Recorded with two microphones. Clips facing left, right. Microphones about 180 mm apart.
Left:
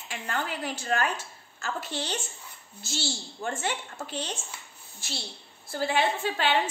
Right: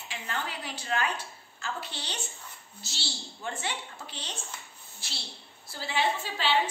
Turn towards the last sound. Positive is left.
turn(degrees=55)  # may be behind; listen again after turning